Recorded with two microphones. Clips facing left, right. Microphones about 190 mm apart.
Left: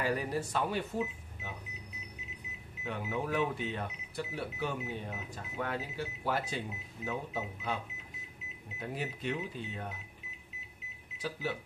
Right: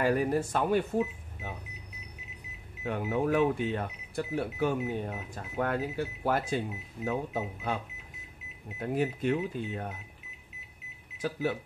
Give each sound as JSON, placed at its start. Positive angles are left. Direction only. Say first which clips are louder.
{"t": 0.0, "sound": "speech", "louder": "right 6 dB", "side_deg": -50}
{"t": 2.8, "sound": "speech", "louder": "right 7 dB", "side_deg": -50}
{"t": 11.1, "sound": "speech", "louder": "right 6 dB", "side_deg": -50}